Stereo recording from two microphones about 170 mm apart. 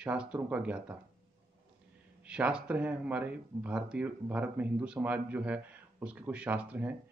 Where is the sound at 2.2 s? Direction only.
5° right (ahead or behind).